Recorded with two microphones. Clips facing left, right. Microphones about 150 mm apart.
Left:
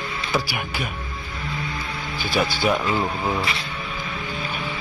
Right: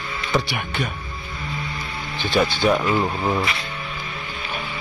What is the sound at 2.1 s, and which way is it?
A man's voice, 10° left (ahead or behind).